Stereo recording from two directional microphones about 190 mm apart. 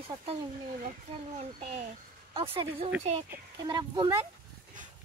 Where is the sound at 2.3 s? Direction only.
30° right (ahead or behind).